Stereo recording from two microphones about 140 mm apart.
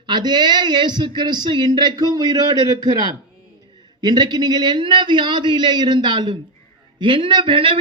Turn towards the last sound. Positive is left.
turn(degrees=-40)  # may be behind; listen again after turning